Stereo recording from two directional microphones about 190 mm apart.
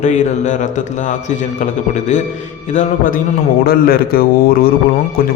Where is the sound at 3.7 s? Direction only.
50° left (ahead or behind).